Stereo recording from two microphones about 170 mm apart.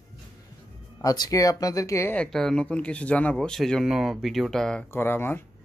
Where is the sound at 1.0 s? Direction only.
25° left (ahead or behind).